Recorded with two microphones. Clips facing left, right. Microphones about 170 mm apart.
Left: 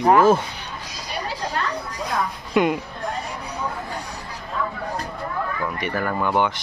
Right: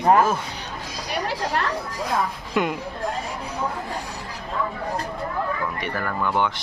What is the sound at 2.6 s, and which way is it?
Speech, centre (ahead or behind).